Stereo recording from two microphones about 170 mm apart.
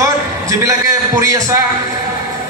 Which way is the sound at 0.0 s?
20° right (ahead or behind).